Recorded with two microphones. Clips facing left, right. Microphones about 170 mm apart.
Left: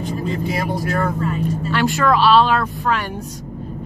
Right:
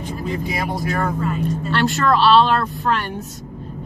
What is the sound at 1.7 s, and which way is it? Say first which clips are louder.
Speech: left 1 dB; 10° left (ahead or behind).